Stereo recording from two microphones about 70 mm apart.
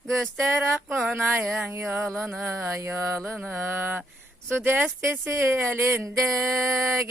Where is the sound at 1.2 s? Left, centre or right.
Right.